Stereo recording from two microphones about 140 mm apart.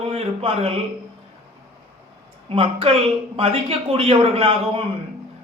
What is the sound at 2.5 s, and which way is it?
A man's voice, 45° right (ahead or behind).